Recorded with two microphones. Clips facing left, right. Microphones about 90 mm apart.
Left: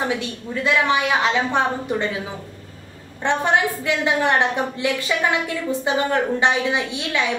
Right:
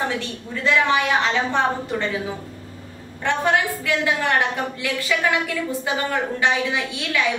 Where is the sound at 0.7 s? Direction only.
15° left (ahead or behind).